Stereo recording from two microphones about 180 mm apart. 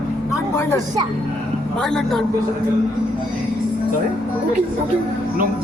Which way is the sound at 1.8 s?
5° left (ahead or behind).